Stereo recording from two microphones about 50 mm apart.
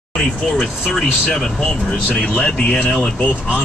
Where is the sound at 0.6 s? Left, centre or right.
Centre.